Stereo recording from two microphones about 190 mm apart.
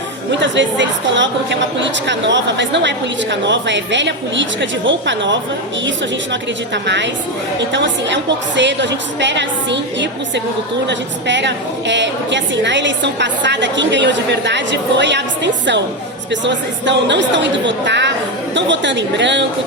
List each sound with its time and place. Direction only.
0.3 s a woman's voice: 70° right (ahead or behind)
6.8 s a woman's voice: 70° right (ahead or behind)